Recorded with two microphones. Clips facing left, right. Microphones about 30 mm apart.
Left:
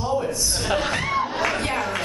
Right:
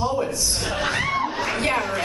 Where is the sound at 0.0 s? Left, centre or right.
Centre.